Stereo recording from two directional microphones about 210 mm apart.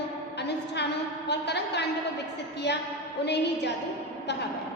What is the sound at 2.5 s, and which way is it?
A woman's voice, 55° left (ahead or behind).